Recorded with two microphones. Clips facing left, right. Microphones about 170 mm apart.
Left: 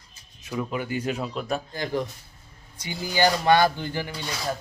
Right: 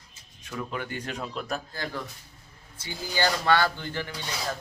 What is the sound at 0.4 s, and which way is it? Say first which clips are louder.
Speech: left 5 dB; 10° left (ahead or behind).